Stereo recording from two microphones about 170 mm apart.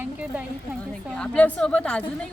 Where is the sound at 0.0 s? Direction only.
5° right (ahead or behind).